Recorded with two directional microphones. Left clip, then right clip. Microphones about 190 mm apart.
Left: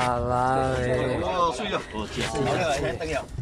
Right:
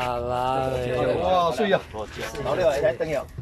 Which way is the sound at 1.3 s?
50° right (ahead or behind).